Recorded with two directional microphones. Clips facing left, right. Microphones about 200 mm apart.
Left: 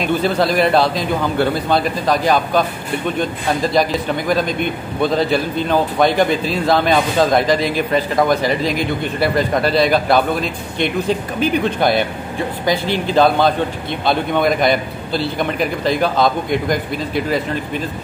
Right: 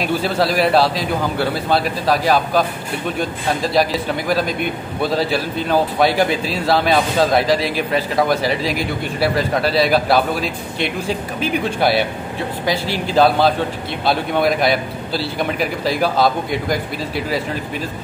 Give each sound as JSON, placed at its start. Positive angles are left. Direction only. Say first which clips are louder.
{"t": 0.0, "sound": "speech", "louder": "left 2 dB", "side_deg": -5}